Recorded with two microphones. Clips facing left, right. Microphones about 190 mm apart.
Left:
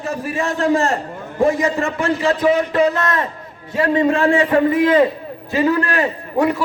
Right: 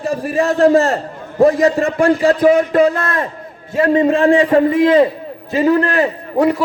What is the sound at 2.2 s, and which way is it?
Speech, 50° right (ahead or behind).